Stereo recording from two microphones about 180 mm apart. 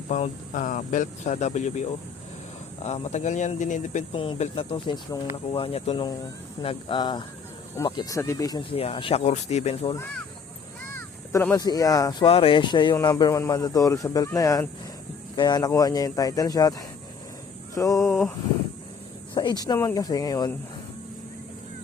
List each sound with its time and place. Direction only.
0.1 s speech: 45° left (ahead or behind)
4.1 s speech: 30° left (ahead or behind)
8.7 s speech: 30° left (ahead or behind)
9.9 s a sound: 10° left (ahead or behind)
10.9 s speech: 15° left (ahead or behind)
12.2 s speech: 30° left (ahead or behind)
17.7 s a sound: 15° left (ahead or behind)
18.1 s a sound: centre (ahead or behind)
19.3 s speech: 25° left (ahead or behind)